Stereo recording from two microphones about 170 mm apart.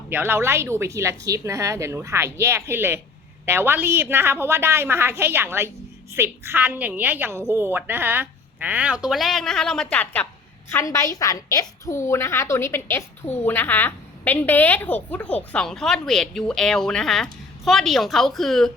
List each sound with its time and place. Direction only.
0.1 s a woman's voice: 10° right (ahead or behind)